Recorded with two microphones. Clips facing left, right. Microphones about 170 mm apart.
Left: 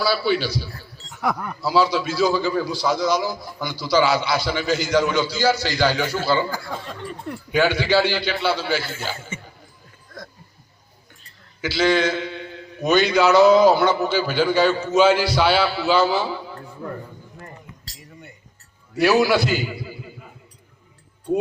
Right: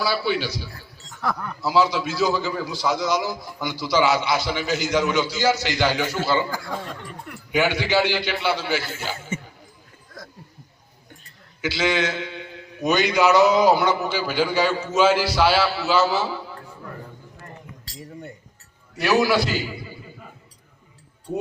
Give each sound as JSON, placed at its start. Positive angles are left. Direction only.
{"t": 0.0, "sound": "a man's voice", "side_deg": -15}
{"t": 1.1, "sound": "speech", "side_deg": 15}
{"t": 1.6, "sound": "a man's voice", "side_deg": -20}
{"t": 7.5, "sound": "a man's voice", "side_deg": -15}
{"t": 11.6, "sound": "a man's voice", "side_deg": -20}
{"t": 18.9, "sound": "a man's voice", "side_deg": 0}